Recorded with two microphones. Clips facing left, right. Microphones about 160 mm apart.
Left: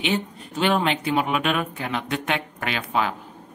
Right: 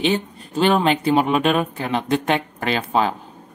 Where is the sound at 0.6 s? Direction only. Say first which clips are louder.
Right 5 dB; 35° right (ahead or behind).